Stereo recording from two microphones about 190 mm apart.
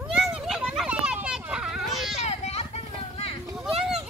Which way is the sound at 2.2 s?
35° left (ahead or behind).